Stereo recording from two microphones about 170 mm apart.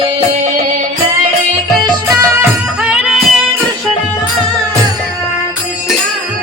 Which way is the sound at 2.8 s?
5° right (ahead or behind).